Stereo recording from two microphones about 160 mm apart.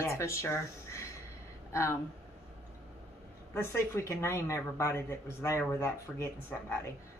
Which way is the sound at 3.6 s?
15° left (ahead or behind).